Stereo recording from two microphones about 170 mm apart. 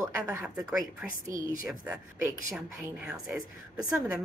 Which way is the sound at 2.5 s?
5° right (ahead or behind).